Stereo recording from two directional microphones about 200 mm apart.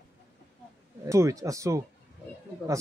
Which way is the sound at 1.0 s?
15° right (ahead or behind).